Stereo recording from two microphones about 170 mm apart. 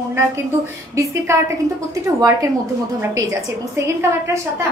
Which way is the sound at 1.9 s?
20° right (ahead or behind).